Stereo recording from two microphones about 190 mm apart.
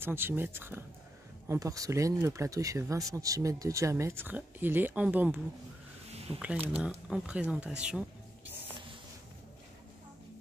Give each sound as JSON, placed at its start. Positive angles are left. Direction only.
{"t": 0.0, "sound": "speech", "side_deg": -10}